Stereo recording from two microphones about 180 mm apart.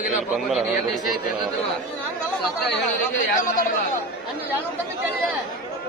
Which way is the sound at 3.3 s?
45° left (ahead or behind).